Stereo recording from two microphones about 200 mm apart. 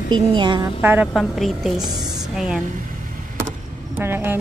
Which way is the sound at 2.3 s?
5° right (ahead or behind).